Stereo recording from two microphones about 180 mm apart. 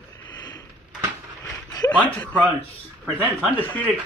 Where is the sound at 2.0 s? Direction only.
10° left (ahead or behind).